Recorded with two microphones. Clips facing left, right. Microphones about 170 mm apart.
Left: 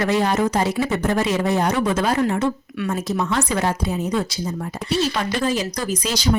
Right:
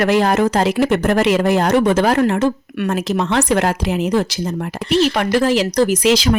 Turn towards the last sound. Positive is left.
turn(degrees=-90)